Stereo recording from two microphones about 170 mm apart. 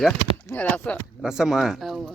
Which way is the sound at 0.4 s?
10° left (ahead or behind).